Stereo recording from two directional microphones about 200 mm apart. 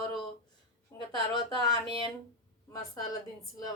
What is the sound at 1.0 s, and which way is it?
Speech, 20° left (ahead or behind).